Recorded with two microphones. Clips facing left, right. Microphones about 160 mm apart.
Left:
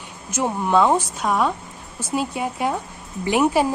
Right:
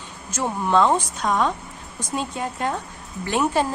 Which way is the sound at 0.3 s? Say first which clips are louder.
Left 2 dB; 10° left (ahead or behind).